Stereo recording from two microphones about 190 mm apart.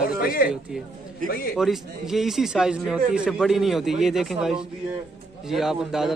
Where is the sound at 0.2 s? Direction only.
50° left (ahead or behind).